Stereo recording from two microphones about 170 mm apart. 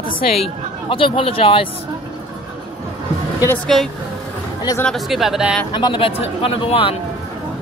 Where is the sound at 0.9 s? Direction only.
30° left (ahead or behind).